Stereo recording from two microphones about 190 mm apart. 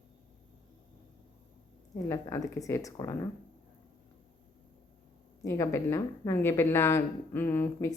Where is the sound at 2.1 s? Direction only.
15° left (ahead or behind).